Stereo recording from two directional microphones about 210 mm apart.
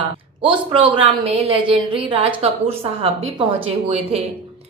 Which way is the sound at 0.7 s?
25° right (ahead or behind).